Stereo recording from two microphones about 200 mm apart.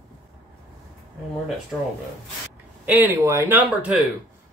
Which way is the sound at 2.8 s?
10° right (ahead or behind).